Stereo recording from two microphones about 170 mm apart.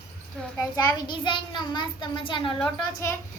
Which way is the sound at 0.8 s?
25° left (ahead or behind).